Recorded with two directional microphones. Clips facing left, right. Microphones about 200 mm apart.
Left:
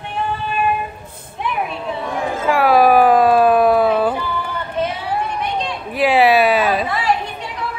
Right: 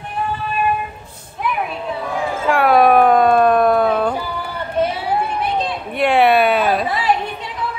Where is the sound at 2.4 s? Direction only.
Centre (ahead or behind).